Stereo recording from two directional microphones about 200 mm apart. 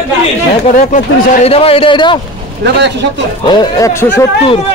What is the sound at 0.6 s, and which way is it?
A man's voice, 40° left (ahead or behind).